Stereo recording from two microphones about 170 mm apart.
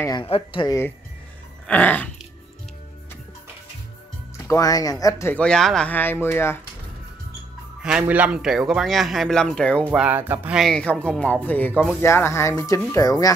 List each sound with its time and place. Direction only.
0.2 s speech: 30° left (ahead or behind)
1.7 s speech: 10° left (ahead or behind)
4.4 s speech: 20° left (ahead or behind)
8.1 s speech: 5° right (ahead or behind)
9.8 s speech: 10° right (ahead or behind)
10.6 s speech: 5° left (ahead or behind); by 13.3 s 20° left (ahead or behind)